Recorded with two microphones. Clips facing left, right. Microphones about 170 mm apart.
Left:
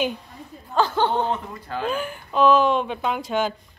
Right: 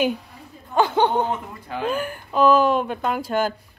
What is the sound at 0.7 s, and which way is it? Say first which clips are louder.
A woman's voice: right 2 dB; 20° right (ahead or behind).